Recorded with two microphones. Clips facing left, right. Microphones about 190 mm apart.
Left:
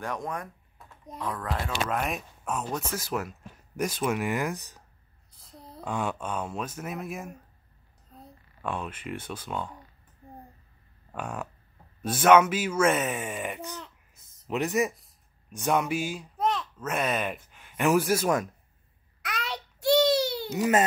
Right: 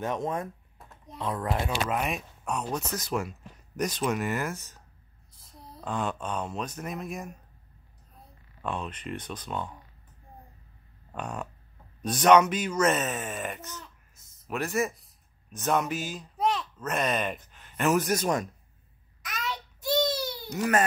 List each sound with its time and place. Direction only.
0.0 s speech: 25° right (ahead or behind)
1.7 s speech: centre (ahead or behind); by 4.8 s 15° left (ahead or behind)
5.9 s speech: 10° left (ahead or behind)
8.6 s speech: 10° left (ahead or behind)
11.1 s speech: 5° left (ahead or behind)
16.3 s speech: centre (ahead or behind)
19.2 s child singing: 70° left (ahead or behind)